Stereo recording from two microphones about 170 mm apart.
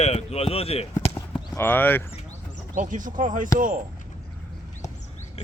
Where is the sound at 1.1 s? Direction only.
10° left (ahead or behind).